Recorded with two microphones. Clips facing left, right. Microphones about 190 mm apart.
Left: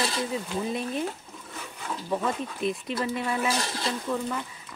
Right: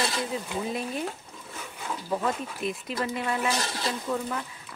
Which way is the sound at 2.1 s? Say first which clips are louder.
Even; centre (ahead or behind).